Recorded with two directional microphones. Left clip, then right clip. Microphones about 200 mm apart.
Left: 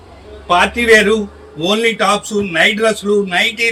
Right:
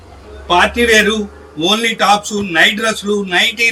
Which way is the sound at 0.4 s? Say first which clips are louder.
Even; 15° left (ahead or behind).